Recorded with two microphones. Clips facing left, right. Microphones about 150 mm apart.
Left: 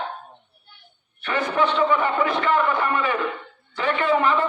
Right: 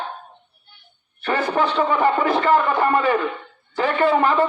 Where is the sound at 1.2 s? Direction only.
35° right (ahead or behind).